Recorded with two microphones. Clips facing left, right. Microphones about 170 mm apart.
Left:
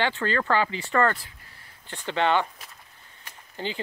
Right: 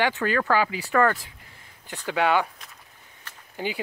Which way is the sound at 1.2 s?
20° right (ahead or behind).